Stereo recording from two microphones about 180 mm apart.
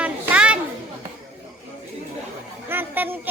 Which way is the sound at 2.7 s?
10° right (ahead or behind).